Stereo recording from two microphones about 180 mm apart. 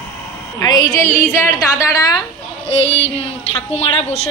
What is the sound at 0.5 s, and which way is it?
A woman's voice, 20° left (ahead or behind).